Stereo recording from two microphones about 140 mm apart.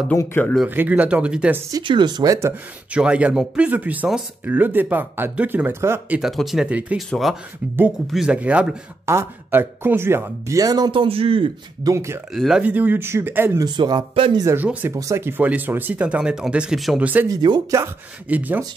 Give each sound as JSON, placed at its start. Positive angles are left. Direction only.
{"t": 0.1, "sound": "speech", "side_deg": 15}
{"t": 0.7, "sound": "speech", "side_deg": -10}
{"t": 1.7, "sound": "speech", "side_deg": -35}
{"t": 2.9, "sound": "speech", "side_deg": -10}
{"t": 11.8, "sound": "speech", "side_deg": -20}
{"t": 12.4, "sound": "speech", "side_deg": -5}
{"t": 13.7, "sound": "speech", "side_deg": -30}
{"t": 14.4, "sound": "speech", "side_deg": -15}
{"t": 17.3, "sound": "speech", "side_deg": -30}
{"t": 18.3, "sound": "speech", "side_deg": -10}